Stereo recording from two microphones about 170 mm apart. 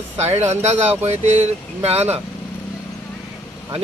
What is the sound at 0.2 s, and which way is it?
Speech, 40° right (ahead or behind).